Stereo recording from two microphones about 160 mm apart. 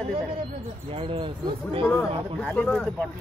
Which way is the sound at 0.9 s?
35° right (ahead or behind).